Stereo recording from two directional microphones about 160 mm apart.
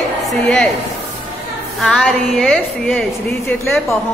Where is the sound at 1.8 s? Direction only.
Centre (ahead or behind).